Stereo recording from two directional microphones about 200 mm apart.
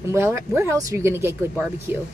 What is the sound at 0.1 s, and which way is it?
A woman's voice, 10° right (ahead or behind).